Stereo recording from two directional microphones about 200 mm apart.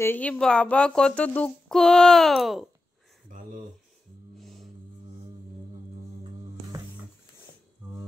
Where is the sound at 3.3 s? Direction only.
40° right (ahead or behind).